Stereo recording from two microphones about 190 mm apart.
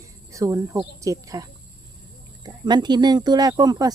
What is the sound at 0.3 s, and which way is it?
Speech, 15° right (ahead or behind).